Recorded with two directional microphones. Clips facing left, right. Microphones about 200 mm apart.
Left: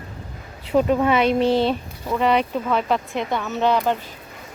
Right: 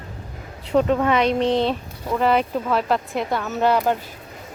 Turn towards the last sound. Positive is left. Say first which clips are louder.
# right 1 dB
turn(degrees=-10)  # may be behind; listen again after turning